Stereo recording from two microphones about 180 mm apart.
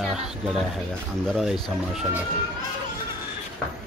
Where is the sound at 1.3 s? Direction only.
Centre (ahead or behind).